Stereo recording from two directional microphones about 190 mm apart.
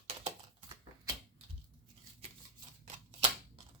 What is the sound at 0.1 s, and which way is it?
Typing, 30° right (ahead or behind).